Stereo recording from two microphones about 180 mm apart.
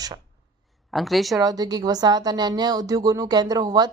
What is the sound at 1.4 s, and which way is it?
A woman's voice, 20° right (ahead or behind).